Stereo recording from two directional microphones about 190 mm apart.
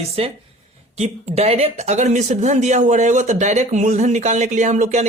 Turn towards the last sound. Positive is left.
turn(degrees=-40)  # may be behind; listen again after turning